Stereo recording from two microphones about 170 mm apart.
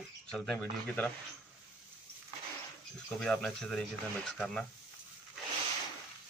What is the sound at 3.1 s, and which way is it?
A man's voice, 5° left (ahead or behind).